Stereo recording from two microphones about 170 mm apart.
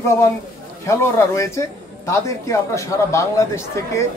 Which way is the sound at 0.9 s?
15° left (ahead or behind).